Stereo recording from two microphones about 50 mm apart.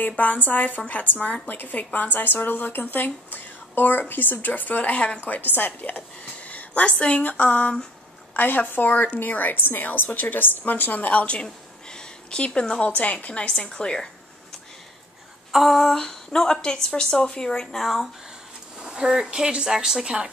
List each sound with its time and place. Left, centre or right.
0.1 s a woman's voice: left
11.4 s a sound: centre
12.9 s a woman's voice: left
13.4 s a woman's voice: centre
15.5 s a woman's voice: centre
17.7 s speech: centre
18.8 s speech: centre